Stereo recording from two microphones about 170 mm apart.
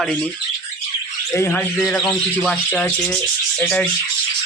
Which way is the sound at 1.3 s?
15° left (ahead or behind).